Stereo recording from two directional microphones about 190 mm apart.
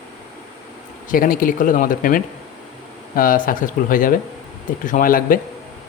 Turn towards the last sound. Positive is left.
turn(degrees=45)  # may be behind; listen again after turning